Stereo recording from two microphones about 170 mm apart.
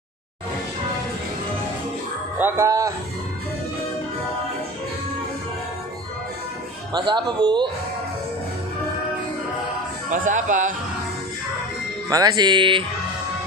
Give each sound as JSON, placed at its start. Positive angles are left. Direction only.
{"t": 2.3, "sound": "speech", "side_deg": -15}
{"t": 6.9, "sound": "speech", "side_deg": -25}
{"t": 10.0, "sound": "speech", "side_deg": -50}
{"t": 12.1, "sound": "speech", "side_deg": -20}